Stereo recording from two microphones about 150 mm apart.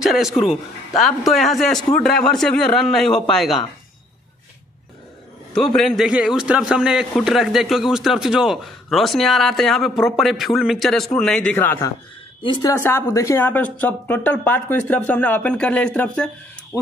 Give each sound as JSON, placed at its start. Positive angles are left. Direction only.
{"t": 0.0, "sound": "a man's voice", "side_deg": 0}
{"t": 5.5, "sound": "a man's voice", "side_deg": 5}
{"t": 11.5, "sound": "speech", "side_deg": 15}
{"t": 16.7, "sound": "owl", "side_deg": 15}